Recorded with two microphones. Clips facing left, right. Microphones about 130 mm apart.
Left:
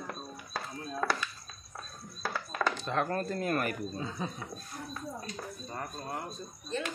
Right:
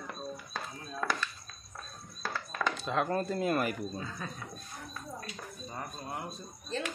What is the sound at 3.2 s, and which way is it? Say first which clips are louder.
Speech: right 1 dB; 10° right (ahead or behind).